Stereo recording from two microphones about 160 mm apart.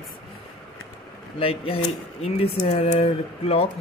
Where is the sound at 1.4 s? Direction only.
35° left (ahead or behind).